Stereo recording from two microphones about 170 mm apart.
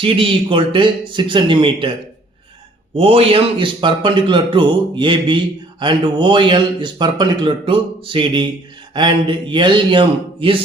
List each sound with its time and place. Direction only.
0.0 s a man's voice: 30° right (ahead or behind)
2.9 s a man's voice: 35° right (ahead or behind)